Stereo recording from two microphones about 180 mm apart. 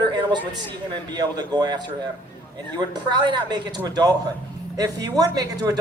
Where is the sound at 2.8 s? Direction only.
25° right (ahead or behind).